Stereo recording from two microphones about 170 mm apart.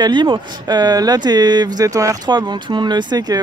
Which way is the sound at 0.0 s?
25° right (ahead or behind).